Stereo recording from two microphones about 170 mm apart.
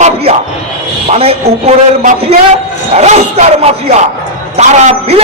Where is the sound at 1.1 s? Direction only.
35° right (ahead or behind).